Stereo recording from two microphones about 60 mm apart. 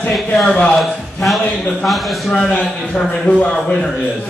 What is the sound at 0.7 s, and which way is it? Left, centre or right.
A man's voice, centre.